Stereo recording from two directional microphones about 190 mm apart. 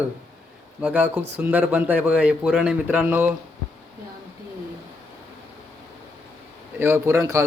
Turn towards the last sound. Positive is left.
turn(degrees=-15)  # may be behind; listen again after turning